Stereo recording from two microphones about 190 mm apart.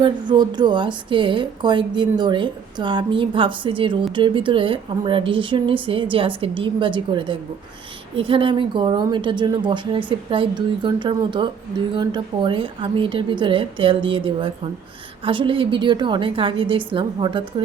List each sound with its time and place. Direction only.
0.0 s speech: 20° right (ahead or behind)